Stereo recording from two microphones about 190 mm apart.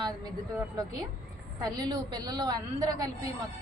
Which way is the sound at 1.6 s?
20° right (ahead or behind).